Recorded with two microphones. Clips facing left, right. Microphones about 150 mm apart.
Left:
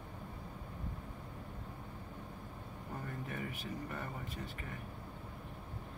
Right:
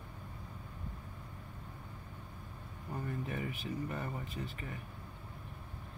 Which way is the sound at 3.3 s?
20° right (ahead or behind).